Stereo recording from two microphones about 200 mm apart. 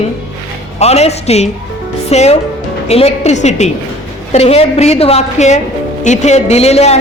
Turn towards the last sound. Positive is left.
turn(degrees=30)  # may be behind; listen again after turning